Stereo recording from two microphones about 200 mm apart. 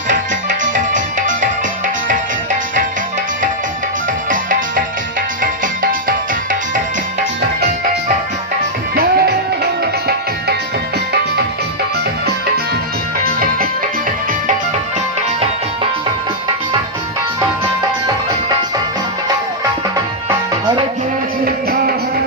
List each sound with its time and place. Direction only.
0.1 s music: 40° right (ahead or behind)
4.3 s music: 40° right (ahead or behind)
9.0 s music: 50° right (ahead or behind)
13.2 s music: 45° right (ahead or behind)
21.4 s music: 50° right (ahead or behind)